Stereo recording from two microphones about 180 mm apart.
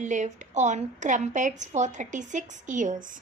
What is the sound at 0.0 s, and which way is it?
A woman's voice, 40° right (ahead or behind).